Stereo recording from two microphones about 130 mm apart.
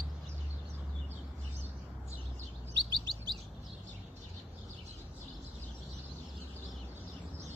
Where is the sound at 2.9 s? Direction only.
35° right (ahead or behind).